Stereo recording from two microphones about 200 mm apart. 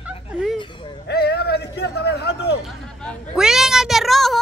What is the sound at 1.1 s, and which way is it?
A man's voice, 55° left (ahead or behind).